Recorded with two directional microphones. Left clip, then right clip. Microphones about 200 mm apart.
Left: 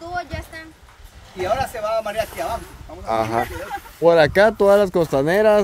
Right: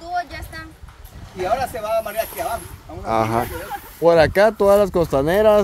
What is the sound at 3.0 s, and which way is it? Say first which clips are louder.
Speech: right 1 dB; 5° right (ahead or behind).